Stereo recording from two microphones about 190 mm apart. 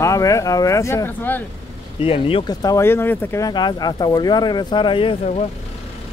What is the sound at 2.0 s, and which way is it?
Speech, 30° left (ahead or behind).